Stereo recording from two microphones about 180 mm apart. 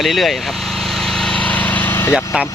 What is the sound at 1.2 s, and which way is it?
Vehicle, 5° left (ahead or behind).